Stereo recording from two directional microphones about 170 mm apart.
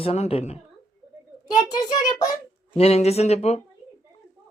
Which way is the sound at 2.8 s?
40° left (ahead or behind).